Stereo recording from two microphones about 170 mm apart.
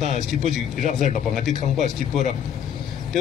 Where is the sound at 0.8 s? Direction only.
45° left (ahead or behind).